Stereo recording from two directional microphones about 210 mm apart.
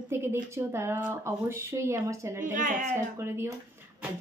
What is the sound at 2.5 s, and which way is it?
Speech, 40° right (ahead or behind).